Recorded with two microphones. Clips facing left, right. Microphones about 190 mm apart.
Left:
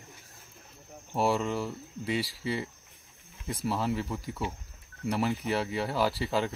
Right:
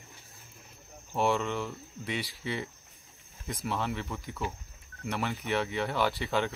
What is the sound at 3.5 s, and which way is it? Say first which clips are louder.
Speech: left 3 dB; 35° left (ahead or behind).